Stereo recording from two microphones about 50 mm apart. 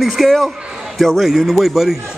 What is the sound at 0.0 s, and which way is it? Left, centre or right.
A man's voice, centre.